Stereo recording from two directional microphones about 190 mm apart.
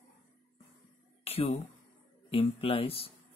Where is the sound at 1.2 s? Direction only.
30° left (ahead or behind).